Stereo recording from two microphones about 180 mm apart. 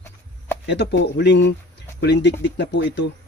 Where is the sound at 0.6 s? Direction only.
75° left (ahead or behind).